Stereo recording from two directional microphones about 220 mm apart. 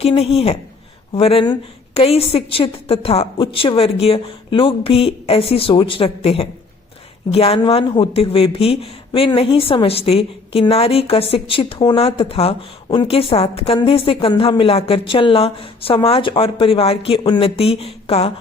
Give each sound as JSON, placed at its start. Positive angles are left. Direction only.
{"t": 0.0, "sound": "speech", "side_deg": 25}